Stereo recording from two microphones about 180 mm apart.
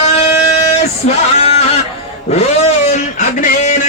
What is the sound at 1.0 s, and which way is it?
Speech, 40° left (ahead or behind).